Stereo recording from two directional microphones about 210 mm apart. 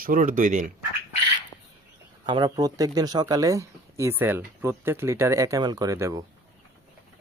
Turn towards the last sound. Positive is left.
turn(degrees=-15)  # may be behind; listen again after turning